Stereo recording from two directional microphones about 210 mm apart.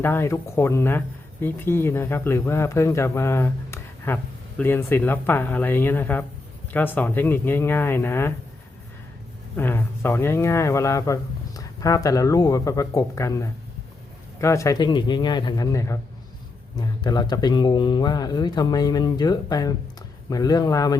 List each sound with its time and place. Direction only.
0.0 s speech: 10° left (ahead or behind)
9.6 s a man's voice: 10° left (ahead or behind)